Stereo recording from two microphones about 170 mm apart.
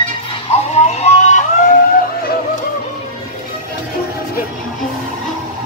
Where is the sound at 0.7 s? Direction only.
40° left (ahead or behind).